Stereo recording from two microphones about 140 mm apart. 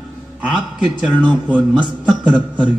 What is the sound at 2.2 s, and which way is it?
Speech, 10° right (ahead or behind).